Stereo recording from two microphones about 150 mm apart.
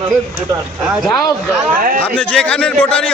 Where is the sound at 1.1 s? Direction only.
20° left (ahead or behind).